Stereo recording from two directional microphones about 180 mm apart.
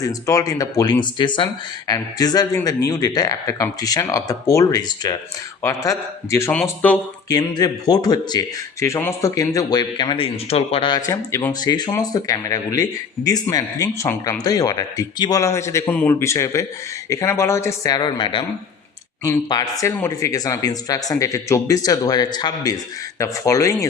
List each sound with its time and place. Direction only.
0.0 s a man's voice: 20° left (ahead or behind)
7.3 s a man's voice: 20° left (ahead or behind)